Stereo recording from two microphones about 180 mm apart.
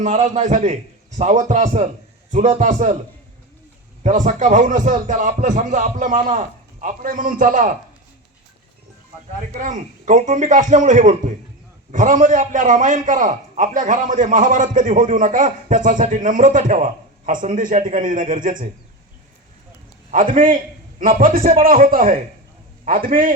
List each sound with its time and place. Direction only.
0.0 s a man's voice: 40° right (ahead or behind)
4.0 s a man's voice: 40° right (ahead or behind)
9.5 s a man's voice: 45° right (ahead or behind)
20.1 s a man's voice: 50° right (ahead or behind)